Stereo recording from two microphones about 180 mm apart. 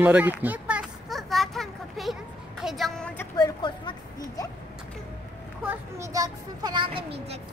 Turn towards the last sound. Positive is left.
turn(degrees=-30)  # may be behind; listen again after turning